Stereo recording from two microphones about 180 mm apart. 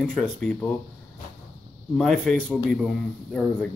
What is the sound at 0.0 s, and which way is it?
Speech, centre (ahead or behind).